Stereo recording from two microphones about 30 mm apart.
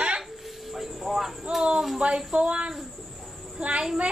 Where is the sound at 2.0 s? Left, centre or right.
Right.